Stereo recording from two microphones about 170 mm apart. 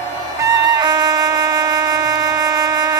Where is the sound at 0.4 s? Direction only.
25° right (ahead or behind).